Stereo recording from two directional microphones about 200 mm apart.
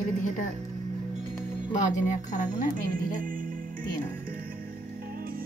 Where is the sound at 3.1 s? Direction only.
45° right (ahead or behind).